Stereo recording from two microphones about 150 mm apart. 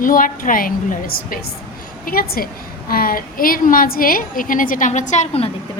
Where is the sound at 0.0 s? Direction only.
65° left (ahead or behind); by 5.5 s 45° left (ahead or behind).